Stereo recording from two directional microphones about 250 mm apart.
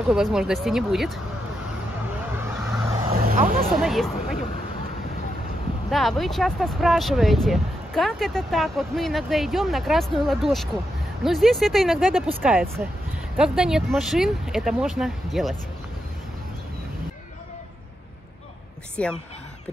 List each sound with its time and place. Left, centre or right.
0.1 s speech: centre
3.2 s speech: right
3.7 s speech: centre
5.9 s speech: centre
19.0 s speech: centre